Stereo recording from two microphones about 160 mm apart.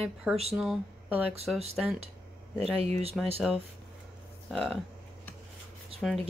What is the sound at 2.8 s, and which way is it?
Speech, 40° right (ahead or behind).